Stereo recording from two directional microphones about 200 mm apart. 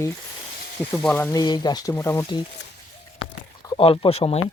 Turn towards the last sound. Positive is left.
turn(degrees=30)  # may be behind; listen again after turning